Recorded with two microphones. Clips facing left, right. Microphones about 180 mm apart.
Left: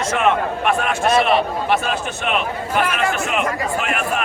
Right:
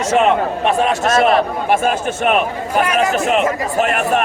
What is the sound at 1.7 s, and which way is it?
A man's voice, 50° right (ahead or behind).